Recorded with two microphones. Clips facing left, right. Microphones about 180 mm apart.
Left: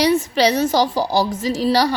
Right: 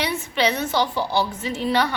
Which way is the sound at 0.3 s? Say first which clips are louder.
Left 1 dB; 40° left (ahead or behind).